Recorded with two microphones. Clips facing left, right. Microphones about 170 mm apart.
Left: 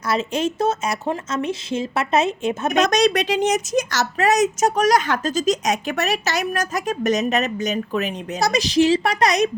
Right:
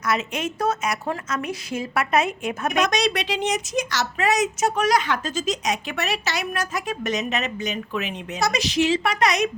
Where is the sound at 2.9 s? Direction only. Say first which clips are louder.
Left 6 dB; 45° left (ahead or behind).